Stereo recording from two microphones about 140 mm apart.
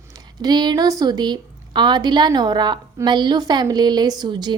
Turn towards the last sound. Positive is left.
turn(degrees=-30)  # may be behind; listen again after turning